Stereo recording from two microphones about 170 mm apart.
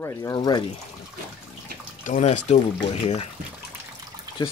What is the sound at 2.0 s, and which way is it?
Speech, 45° left (ahead or behind).